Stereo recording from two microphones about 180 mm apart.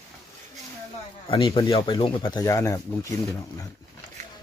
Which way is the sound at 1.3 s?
30° left (ahead or behind).